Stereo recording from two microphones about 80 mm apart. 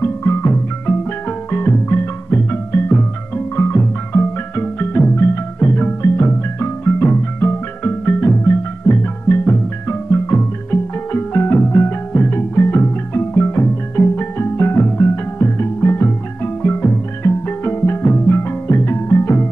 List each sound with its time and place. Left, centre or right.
0.0 s music: left